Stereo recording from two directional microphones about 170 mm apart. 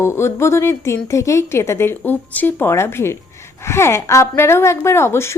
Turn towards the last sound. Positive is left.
turn(degrees=15)  # may be behind; listen again after turning